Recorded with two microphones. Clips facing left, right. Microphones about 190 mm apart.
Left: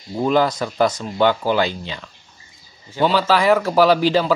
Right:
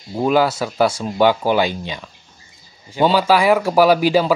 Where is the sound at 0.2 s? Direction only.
5° right (ahead or behind).